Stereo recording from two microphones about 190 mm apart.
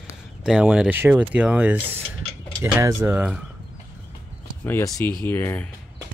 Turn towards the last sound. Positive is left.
turn(degrees=10)  # may be behind; listen again after turning